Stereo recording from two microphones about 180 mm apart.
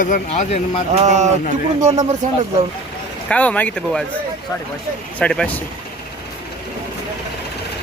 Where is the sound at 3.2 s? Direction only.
5° left (ahead or behind).